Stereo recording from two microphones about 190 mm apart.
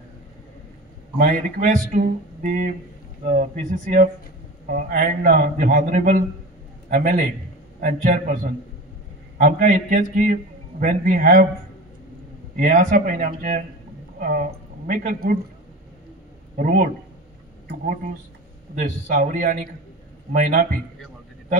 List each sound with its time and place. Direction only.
1.1 s a man's voice: 50° right (ahead or behind)
12.5 s a man's voice: 45° right (ahead or behind)
16.5 s a man's voice: 45° right (ahead or behind)
18.8 s a man's voice: 45° right (ahead or behind)